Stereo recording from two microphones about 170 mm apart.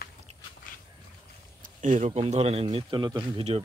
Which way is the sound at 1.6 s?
45° right (ahead or behind).